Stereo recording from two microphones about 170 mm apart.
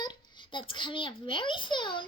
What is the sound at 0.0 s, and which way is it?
A child's voice, 25° left (ahead or behind).